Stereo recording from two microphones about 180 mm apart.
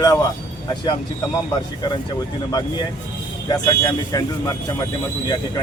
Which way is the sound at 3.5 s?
20° left (ahead or behind).